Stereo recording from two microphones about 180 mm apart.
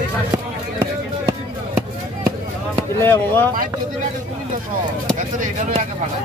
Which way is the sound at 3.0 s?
10° left (ahead or behind).